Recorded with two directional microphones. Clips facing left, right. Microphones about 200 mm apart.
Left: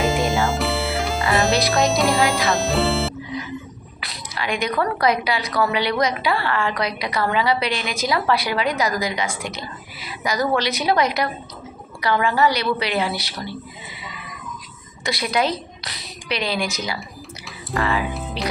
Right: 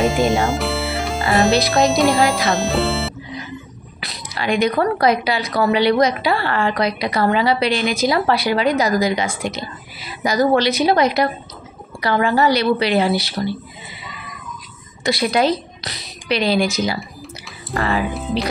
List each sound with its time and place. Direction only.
0.0 s music: centre (ahead or behind)
1.3 s speech: centre (ahead or behind)
4.0 s a woman's voice: 30° right (ahead or behind)
15.0 s a woman's voice: 30° right (ahead or behind)